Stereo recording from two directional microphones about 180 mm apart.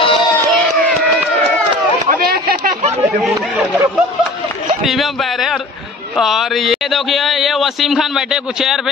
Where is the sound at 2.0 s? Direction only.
60° right (ahead or behind).